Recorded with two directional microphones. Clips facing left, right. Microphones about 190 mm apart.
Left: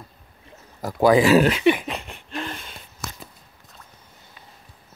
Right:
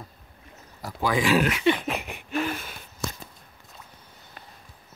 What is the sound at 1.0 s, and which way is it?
Speech, 40° left (ahead or behind).